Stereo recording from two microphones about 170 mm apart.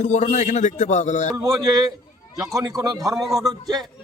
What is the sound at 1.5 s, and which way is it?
A man's voice, 20° right (ahead or behind).